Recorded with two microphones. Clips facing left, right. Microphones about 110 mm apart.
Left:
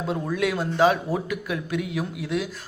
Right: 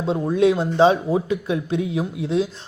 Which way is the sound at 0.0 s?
25° right (ahead or behind).